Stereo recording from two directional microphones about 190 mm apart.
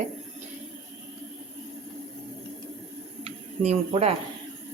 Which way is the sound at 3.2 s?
30° right (ahead or behind).